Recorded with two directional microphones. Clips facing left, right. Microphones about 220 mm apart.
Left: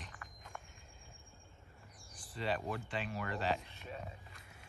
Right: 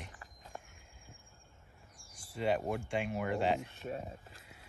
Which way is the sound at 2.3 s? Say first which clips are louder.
Right 5 dB; 15° right (ahead or behind).